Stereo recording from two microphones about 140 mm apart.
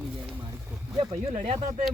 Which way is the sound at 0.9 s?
50° right (ahead or behind).